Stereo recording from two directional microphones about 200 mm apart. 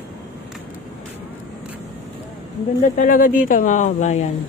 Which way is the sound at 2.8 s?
40° left (ahead or behind).